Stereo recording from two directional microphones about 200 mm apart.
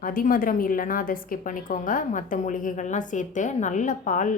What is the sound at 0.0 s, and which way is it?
A woman's voice, 45° left (ahead or behind).